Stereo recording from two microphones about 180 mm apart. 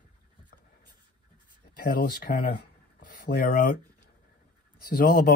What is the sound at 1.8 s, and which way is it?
Speech, 50° left (ahead or behind).